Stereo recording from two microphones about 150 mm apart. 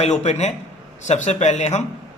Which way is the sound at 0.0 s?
45° left (ahead or behind).